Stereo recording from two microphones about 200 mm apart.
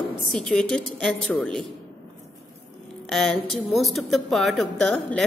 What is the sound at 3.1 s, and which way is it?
A woman's voice, centre (ahead or behind).